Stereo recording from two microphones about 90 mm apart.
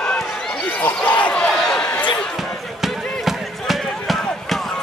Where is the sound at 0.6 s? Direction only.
15° left (ahead or behind).